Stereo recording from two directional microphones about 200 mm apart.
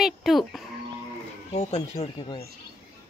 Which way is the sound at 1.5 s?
30° left (ahead or behind).